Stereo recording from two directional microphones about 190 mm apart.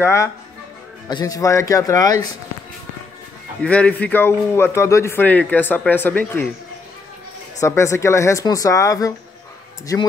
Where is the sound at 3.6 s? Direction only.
5° left (ahead or behind).